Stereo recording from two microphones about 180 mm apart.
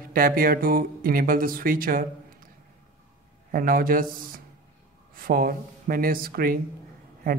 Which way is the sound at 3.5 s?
50° right (ahead or behind).